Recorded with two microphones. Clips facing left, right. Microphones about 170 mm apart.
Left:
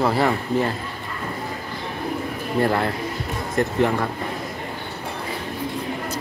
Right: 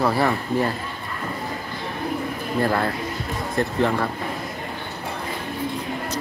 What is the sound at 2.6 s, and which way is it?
Speech, 20° left (ahead or behind).